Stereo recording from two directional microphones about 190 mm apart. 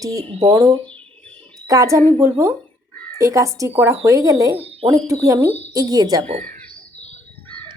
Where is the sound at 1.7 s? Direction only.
15° right (ahead or behind).